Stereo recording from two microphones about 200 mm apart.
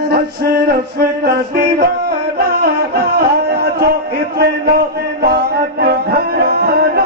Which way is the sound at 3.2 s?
55° right (ahead or behind).